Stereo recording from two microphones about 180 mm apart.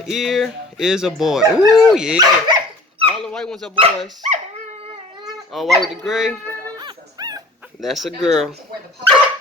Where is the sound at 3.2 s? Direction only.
5° left (ahead or behind).